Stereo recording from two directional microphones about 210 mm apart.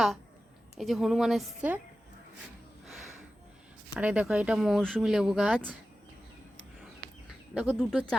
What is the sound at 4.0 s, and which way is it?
Speech, 5° right (ahead or behind).